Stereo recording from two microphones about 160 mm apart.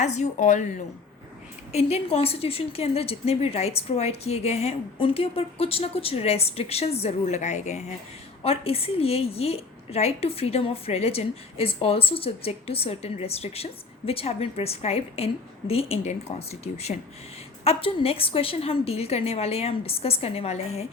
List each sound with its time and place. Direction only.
0.0 s a woman's voice: 50° left (ahead or behind)
1.7 s a woman's voice: 40° left (ahead or behind)